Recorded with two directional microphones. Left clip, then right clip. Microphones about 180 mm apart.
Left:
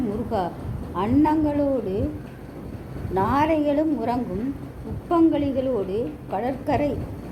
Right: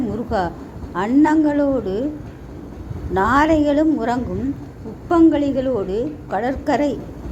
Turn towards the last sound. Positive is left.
turn(degrees=-25)  # may be behind; listen again after turning